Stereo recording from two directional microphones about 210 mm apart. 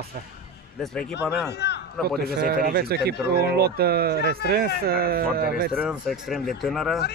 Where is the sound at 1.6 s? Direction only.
50° left (ahead or behind).